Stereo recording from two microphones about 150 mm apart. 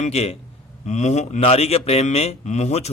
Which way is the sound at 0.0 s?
45° left (ahead or behind).